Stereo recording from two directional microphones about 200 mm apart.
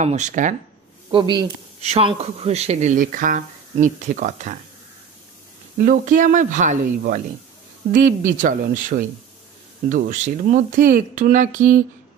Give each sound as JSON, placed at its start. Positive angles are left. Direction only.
{"t": 0.0, "sound": "speech", "side_deg": -35}
{"t": 1.1, "sound": "speech", "side_deg": -25}
{"t": 5.8, "sound": "speech", "side_deg": -45}